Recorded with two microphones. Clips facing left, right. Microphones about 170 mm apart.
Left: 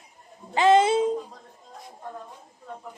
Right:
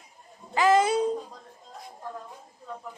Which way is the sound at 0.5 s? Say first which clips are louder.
Left 3 dB; 25° left (ahead or behind).